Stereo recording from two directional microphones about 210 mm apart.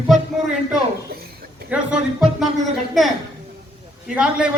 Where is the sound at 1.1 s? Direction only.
45° right (ahead or behind).